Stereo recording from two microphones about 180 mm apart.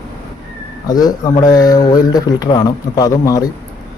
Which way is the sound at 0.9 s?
20° left (ahead or behind).